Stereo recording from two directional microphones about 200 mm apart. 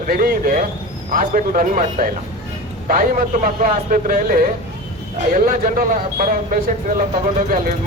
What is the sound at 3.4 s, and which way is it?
Speech, 45° right (ahead or behind).